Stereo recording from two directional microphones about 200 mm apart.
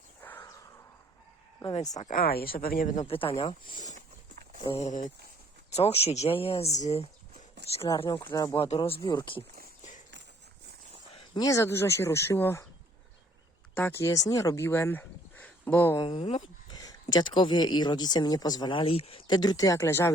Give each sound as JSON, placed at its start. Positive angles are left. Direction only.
{"t": 0.2, "sound": "a sound", "side_deg": 10}
{"t": 1.6, "sound": "speech", "side_deg": 30}
{"t": 2.0, "sound": "speech", "side_deg": 40}
{"t": 3.9, "sound": "walk", "side_deg": -40}
{"t": 4.6, "sound": "speech", "side_deg": 30}
{"t": 8.5, "sound": "speech", "side_deg": 30}
{"t": 11.3, "sound": "speech", "side_deg": 15}
{"t": 13.7, "sound": "speech", "side_deg": 10}
{"t": 16.0, "sound": "speech", "side_deg": 30}